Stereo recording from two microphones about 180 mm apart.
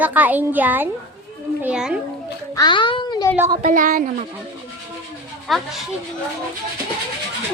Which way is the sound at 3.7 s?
50° right (ahead or behind).